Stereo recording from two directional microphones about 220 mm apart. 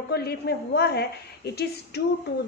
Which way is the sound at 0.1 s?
45° left (ahead or behind).